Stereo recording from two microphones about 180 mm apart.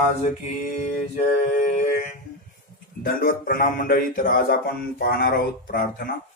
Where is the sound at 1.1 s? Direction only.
45° left (ahead or behind).